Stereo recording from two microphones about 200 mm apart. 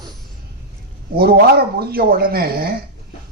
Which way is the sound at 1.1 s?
50° right (ahead or behind).